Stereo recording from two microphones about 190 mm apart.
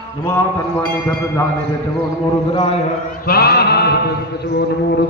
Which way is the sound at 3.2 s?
55° left (ahead or behind).